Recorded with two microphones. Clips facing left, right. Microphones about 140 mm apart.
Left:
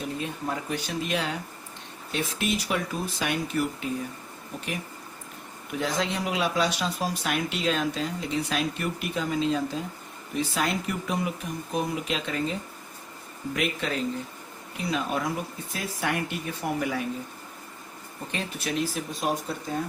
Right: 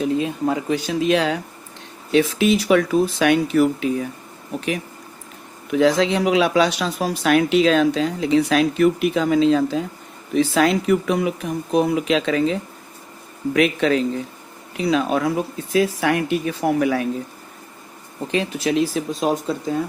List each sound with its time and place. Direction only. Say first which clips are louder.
0.0 s speech: right 11 dB; 90° right
5.7 s speech: right 12 dB; 90° right
18.3 s speech: right 10 dB; 90° right